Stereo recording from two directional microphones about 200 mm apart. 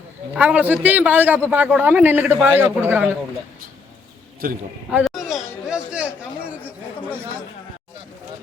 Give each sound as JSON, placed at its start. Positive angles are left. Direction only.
{"t": 0.3, "sound": "a man's voice", "side_deg": -10}
{"t": 4.4, "sound": "a man's voice", "side_deg": -45}
{"t": 4.9, "sound": "a woman's voice", "side_deg": 0}
{"t": 5.6, "sound": "chatter", "side_deg": -5}